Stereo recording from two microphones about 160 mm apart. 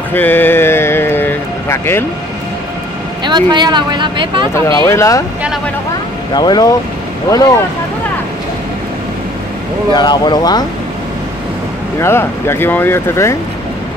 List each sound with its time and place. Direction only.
0.1 s a sound: 10° left (ahead or behind)
3.3 s speech: 25° right (ahead or behind)
4.6 s speech: 15° left (ahead or behind)
6.3 s speech: 25° left (ahead or behind)
9.9 s speech: 25° left (ahead or behind)
12.0 s speech: 15° left (ahead or behind)